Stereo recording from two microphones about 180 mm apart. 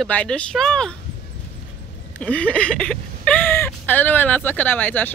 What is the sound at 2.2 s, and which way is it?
Speech, 5° left (ahead or behind).